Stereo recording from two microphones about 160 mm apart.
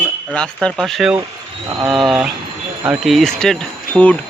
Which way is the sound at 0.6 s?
Centre (ahead or behind).